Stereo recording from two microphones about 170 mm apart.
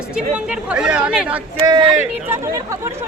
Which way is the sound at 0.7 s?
5° right (ahead or behind).